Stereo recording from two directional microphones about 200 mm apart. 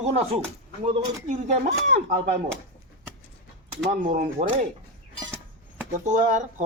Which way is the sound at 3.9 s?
40° right (ahead or behind).